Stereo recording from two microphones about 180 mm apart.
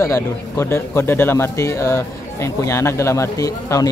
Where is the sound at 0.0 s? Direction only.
15° left (ahead or behind).